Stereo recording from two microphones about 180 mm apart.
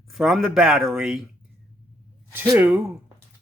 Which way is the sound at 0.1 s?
Centre (ahead or behind).